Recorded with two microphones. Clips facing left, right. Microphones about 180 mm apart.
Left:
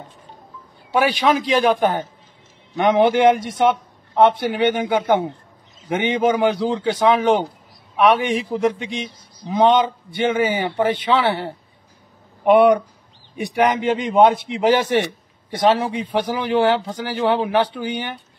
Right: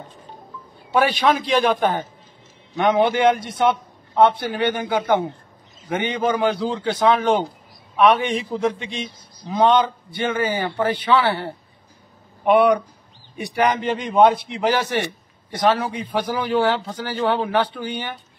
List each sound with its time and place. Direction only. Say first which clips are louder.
0.9 s a man's voice: left 1 dB; 10° left (ahead or behind)